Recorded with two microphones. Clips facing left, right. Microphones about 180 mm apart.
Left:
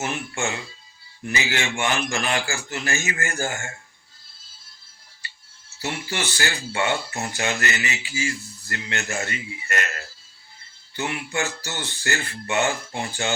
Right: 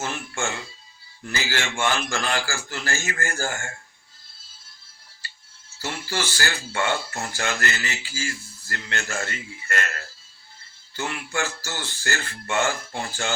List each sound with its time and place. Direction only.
0.0 s a man's voice: 20° left (ahead or behind)
5.8 s a man's voice: 20° left (ahead or behind)